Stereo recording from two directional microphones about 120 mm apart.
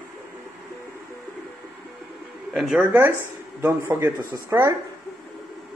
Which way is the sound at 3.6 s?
20° right (ahead or behind).